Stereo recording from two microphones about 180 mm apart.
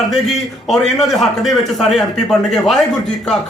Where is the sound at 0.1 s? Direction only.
Centre (ahead or behind).